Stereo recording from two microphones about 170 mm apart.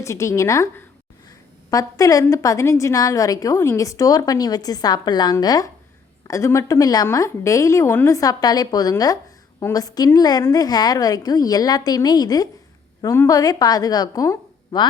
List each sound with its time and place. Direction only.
0.0 s a woman's voice: 15° left (ahead or behind)